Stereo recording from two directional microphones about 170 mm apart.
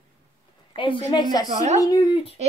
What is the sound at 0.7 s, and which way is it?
A woman's voice, 30° left (ahead or behind).